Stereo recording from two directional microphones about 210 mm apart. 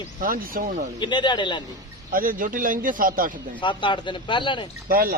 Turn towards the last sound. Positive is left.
turn(degrees=-45)  # may be behind; listen again after turning